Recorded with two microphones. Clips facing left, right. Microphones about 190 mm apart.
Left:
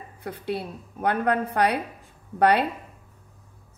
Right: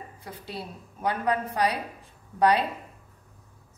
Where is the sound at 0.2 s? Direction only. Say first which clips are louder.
Left 9 dB; 60° left (ahead or behind).